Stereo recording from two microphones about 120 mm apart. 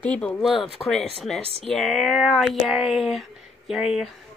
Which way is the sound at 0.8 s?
20° left (ahead or behind).